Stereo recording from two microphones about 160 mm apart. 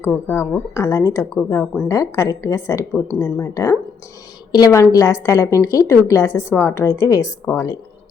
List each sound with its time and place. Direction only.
0.0 s a woman's voice: 15° left (ahead or behind)
1.9 s a woman's voice: 20° left (ahead or behind)